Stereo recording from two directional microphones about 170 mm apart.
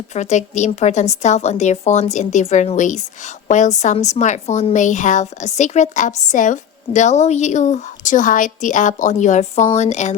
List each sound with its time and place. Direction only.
0.1 s a woman's voice: 40° left (ahead or behind)